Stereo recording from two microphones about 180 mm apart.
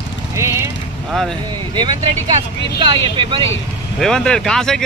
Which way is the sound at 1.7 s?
25° right (ahead or behind).